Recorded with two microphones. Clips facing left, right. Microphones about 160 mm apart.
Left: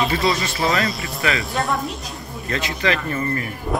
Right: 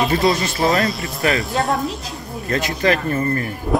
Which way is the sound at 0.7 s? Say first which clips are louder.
Right 3 dB; centre (ahead or behind).